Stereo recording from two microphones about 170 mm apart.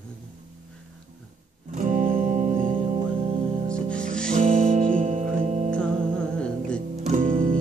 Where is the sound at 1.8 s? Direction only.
50° right (ahead or behind).